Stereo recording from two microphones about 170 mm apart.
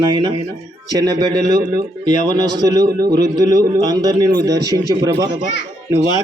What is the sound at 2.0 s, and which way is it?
A man's voice, 25° right (ahead or behind).